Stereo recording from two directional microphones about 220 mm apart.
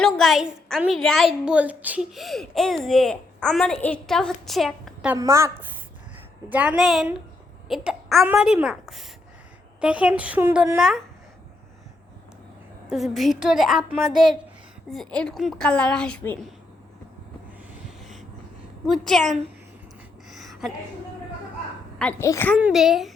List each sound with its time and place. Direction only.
0.0 s a woman's voice: centre (ahead or behind)
5.1 s a woman's voice: 15° right (ahead or behind)
6.5 s a woman's voice: 5° right (ahead or behind)
12.9 s a woman's voice: centre (ahead or behind)
14.8 s a woman's voice: centre (ahead or behind)
18.9 s a woman's voice: centre (ahead or behind)
20.3 s a sound: centre (ahead or behind)
21.9 s a woman's voice: 10° left (ahead or behind)